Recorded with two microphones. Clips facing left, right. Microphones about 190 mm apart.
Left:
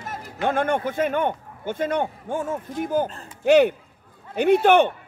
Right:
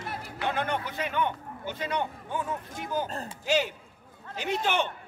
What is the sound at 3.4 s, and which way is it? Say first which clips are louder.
A man's voice: left 12 dB; 60° left (ahead or behind).